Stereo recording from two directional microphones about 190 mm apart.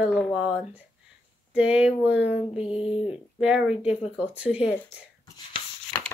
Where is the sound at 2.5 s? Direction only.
30° left (ahead or behind).